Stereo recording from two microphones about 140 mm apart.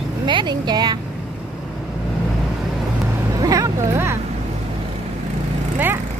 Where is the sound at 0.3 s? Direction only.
35° right (ahead or behind).